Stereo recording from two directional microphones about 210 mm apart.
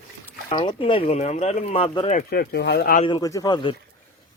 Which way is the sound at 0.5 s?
25° left (ahead or behind).